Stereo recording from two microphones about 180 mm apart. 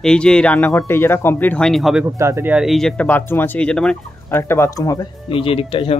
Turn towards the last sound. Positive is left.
turn(degrees=30)  # may be behind; listen again after turning